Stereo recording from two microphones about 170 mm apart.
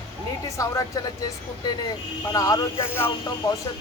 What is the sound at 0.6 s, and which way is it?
Speech, 20° left (ahead or behind).